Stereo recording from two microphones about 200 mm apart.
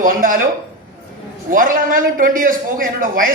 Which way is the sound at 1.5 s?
45° right (ahead or behind).